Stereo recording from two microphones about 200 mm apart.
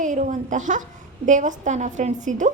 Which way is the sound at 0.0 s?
40° right (ahead or behind).